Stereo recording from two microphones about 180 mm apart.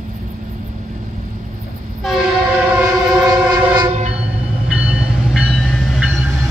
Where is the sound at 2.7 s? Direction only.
15° right (ahead or behind).